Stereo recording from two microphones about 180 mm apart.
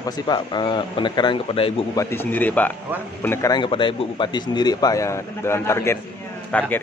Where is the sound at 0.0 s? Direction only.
25° left (ahead or behind).